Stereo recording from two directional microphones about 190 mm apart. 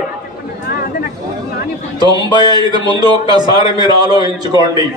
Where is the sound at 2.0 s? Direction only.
20° right (ahead or behind).